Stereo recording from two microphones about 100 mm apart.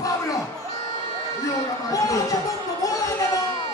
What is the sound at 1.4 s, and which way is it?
Speech, 35° left (ahead or behind).